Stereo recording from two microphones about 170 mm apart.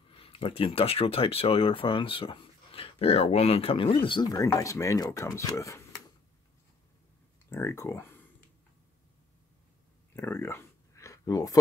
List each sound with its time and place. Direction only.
0.1 s speech: 35° left (ahead or behind); by 5.9 s 20° left (ahead or behind)
7.4 s speech: 15° left (ahead or behind)
10.1 s a sound: 15° left (ahead or behind)